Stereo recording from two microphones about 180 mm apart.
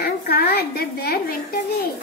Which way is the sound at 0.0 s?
60° left (ahead or behind).